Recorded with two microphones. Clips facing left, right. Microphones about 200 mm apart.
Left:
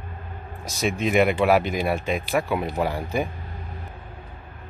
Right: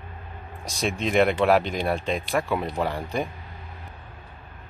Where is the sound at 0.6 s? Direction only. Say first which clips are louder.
Left 2 dB; centre (ahead or behind).